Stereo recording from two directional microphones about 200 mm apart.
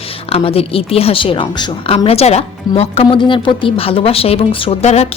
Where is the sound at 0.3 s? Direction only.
30° left (ahead or behind).